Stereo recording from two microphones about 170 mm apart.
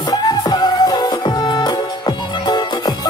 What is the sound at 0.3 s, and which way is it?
Music, 25° left (ahead or behind).